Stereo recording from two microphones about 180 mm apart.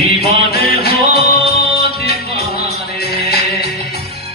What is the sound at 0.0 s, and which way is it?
Music, 60° left (ahead or behind).